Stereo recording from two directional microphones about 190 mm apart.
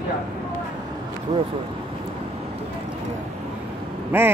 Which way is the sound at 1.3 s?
30° right (ahead or behind).